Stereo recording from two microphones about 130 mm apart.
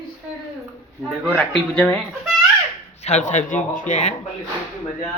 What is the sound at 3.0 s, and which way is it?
Speech, 60° left (ahead or behind).